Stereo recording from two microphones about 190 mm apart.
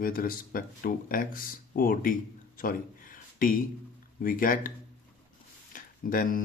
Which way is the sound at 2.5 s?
45° left (ahead or behind).